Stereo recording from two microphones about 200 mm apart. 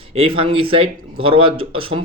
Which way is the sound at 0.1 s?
30° right (ahead or behind).